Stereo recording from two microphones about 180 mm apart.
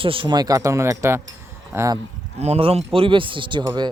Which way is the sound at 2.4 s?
35° right (ahead or behind).